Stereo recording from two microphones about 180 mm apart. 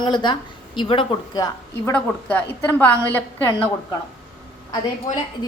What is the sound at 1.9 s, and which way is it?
A woman's voice, 10° left (ahead or behind).